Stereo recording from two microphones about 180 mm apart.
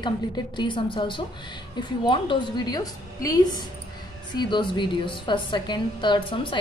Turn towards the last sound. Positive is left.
turn(degrees=25)  # may be behind; listen again after turning